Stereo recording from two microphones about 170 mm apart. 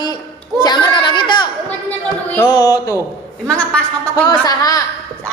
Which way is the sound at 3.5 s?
5° left (ahead or behind).